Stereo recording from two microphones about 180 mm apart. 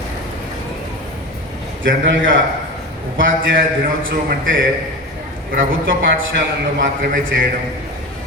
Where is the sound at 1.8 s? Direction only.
90° right.